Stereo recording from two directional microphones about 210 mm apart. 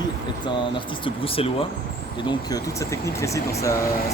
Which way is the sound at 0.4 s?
25° left (ahead or behind).